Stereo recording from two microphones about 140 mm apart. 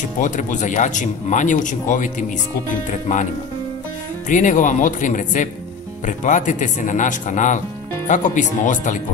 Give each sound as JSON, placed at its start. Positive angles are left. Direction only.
{"t": 0.2, "sound": "speech", "side_deg": 65}
{"t": 4.3, "sound": "speech", "side_deg": 65}